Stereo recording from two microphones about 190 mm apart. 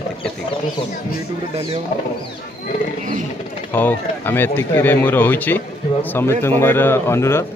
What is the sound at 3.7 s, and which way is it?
A man's voice, 10° left (ahead or behind).